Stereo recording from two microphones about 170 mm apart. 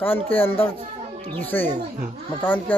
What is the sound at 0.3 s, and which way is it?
Speech, 35° left (ahead or behind).